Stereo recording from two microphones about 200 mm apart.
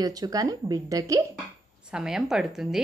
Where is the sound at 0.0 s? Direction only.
20° right (ahead or behind).